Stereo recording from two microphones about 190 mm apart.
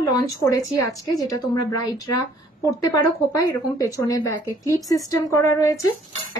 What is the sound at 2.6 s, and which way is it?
Speech, 20° left (ahead or behind).